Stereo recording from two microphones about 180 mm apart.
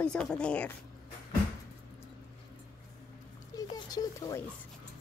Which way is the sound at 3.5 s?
20° left (ahead or behind).